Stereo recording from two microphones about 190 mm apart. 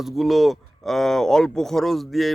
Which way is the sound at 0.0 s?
Centre (ahead or behind).